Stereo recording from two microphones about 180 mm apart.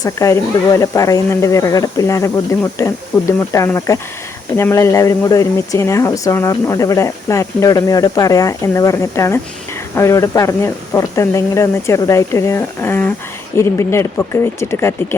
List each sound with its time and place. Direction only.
0.0 s speech: 20° left (ahead or behind)